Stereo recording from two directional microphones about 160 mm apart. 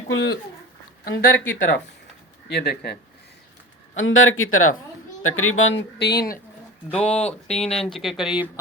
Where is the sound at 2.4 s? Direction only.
80° left.